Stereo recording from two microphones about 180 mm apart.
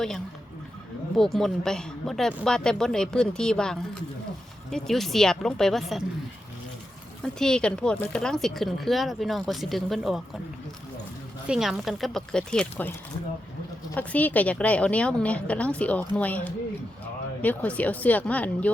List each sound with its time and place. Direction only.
1.1 s a woman's voice: centre (ahead or behind)
7.3 s a woman's voice: 5° left (ahead or behind)
11.4 s a woman's voice: 5° right (ahead or behind)